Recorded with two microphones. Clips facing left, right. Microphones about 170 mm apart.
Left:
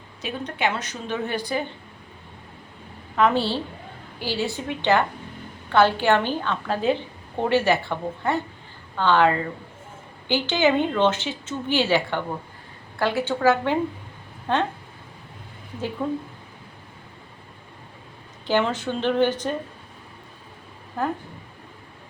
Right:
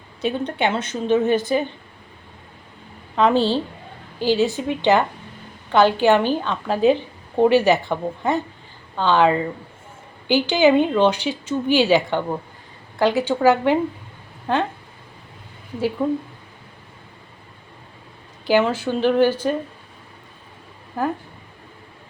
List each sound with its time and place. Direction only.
0.2 s a woman's voice: 30° right (ahead or behind)
3.2 s a woman's voice: 20° right (ahead or behind)
16.0 s speech: 15° right (ahead or behind)
18.4 s speech: 10° right (ahead or behind)
21.0 s speech: 10° right (ahead or behind)